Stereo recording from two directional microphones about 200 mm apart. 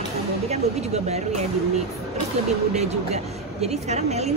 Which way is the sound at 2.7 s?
35° right (ahead or behind).